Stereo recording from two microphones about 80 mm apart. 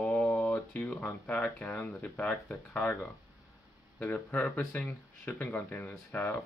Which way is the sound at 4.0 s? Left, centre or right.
Centre.